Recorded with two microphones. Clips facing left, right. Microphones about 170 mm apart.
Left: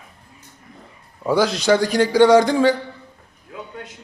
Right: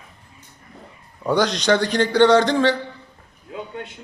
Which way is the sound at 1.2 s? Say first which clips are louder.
Left 2 dB; 5° left (ahead or behind).